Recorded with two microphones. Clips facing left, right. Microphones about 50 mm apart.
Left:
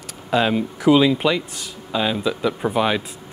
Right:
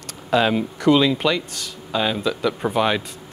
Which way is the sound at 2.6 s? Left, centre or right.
Centre.